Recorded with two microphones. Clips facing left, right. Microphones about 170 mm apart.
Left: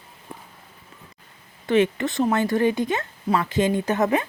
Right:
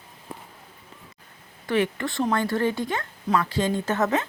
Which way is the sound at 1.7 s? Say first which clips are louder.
Left 4 dB; 20° left (ahead or behind).